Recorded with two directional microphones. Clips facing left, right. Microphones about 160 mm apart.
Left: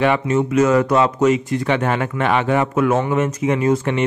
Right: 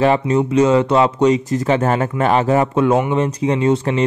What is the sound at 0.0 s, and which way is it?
Speech, 35° right (ahead or behind).